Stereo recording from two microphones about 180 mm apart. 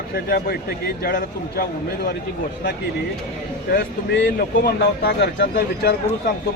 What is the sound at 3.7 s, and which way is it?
Speech, 65° left (ahead or behind).